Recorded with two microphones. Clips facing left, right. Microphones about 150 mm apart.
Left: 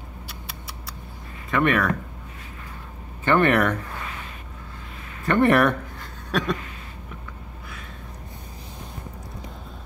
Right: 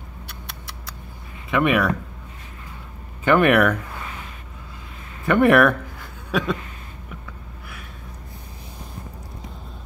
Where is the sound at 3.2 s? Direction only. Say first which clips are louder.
Right 3 dB; 10° right (ahead or behind).